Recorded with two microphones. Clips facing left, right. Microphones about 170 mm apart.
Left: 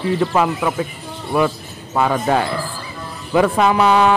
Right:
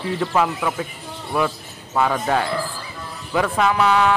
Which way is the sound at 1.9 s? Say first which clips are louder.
Left 3 dB; 25° left (ahead or behind).